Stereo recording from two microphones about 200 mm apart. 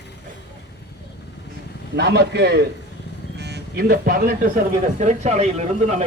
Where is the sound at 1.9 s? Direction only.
55° right (ahead or behind).